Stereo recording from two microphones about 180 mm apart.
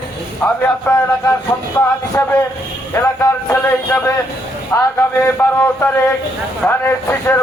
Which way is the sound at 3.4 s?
15° left (ahead or behind).